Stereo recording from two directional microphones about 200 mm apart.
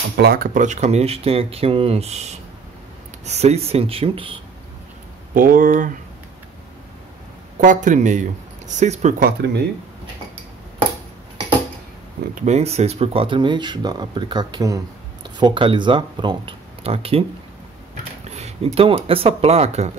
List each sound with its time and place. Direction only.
0.2 s speech: 50° right (ahead or behind); by 2.2 s 30° right (ahead or behind)
3.3 s speech: 30° right (ahead or behind)
5.3 s speech: 45° right (ahead or behind)
7.6 s speech: 40° right (ahead or behind)
9.2 s speech: 55° right (ahead or behind)
12.4 s speech: 35° right (ahead or behind)
18.3 s speech: 30° right (ahead or behind)